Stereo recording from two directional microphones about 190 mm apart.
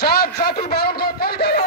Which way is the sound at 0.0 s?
55° left (ahead or behind).